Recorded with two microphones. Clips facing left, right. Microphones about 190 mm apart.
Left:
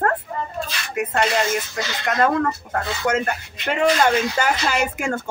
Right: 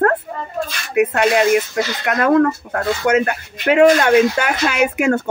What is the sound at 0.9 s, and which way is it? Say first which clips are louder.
Speech: right 7 dB; 65° right (ahead or behind).